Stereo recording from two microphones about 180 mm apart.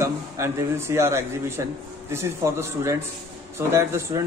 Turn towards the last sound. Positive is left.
turn(degrees=-15)  # may be behind; listen again after turning